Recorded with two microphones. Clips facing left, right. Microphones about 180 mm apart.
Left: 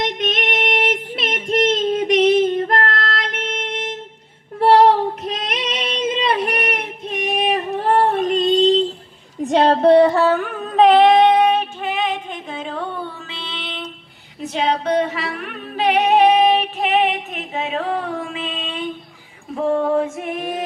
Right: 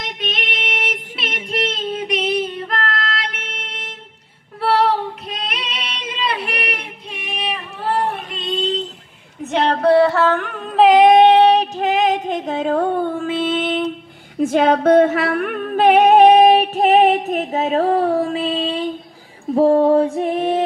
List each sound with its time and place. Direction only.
0.0 s child singing: 45° left (ahead or behind)
4.6 s female singing: 45° left (ahead or behind)
9.5 s a sound: 30° left (ahead or behind); by 13.9 s 50° right (ahead or behind)
14.4 s singing: 50° right (ahead or behind)
19.5 s female singing: 35° right (ahead or behind)